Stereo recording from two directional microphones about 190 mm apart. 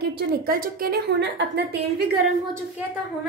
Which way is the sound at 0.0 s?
60° right (ahead or behind).